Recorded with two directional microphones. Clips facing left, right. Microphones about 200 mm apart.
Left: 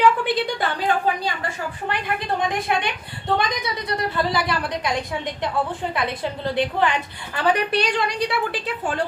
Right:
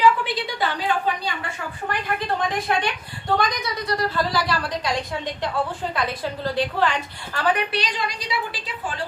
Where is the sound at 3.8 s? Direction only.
20° left (ahead or behind).